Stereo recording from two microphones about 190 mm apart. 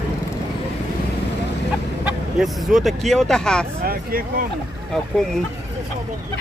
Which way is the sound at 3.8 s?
50° right (ahead or behind).